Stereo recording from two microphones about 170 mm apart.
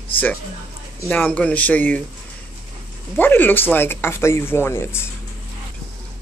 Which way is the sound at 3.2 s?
10° left (ahead or behind).